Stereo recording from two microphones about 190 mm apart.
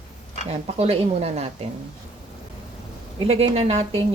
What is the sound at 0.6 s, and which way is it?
Speech, 35° right (ahead or behind).